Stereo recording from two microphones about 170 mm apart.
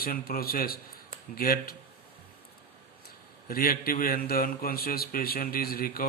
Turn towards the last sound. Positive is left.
turn(degrees=60)  # may be behind; listen again after turning